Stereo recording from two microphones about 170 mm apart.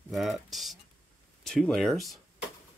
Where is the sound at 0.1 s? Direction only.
Centre (ahead or behind).